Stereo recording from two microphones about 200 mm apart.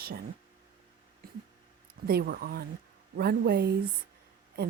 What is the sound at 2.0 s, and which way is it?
Speech, 50° right (ahead or behind).